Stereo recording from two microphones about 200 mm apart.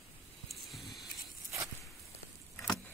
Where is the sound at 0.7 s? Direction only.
Centre (ahead or behind).